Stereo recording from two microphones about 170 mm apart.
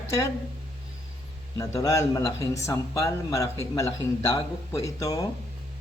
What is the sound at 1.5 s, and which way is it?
Speech, 20° left (ahead or behind).